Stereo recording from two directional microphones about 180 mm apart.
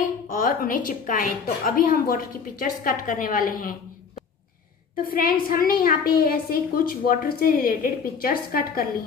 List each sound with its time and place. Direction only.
0.3 s a woman's voice: 50° left (ahead or behind)
5.1 s a woman's voice: 55° left (ahead or behind)